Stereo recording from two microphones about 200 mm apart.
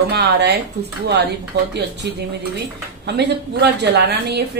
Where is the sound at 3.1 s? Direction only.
60° right (ahead or behind).